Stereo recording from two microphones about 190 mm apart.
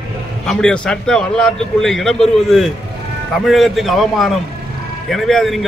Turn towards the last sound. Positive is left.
turn(degrees=0)  # may be behind; listen again after turning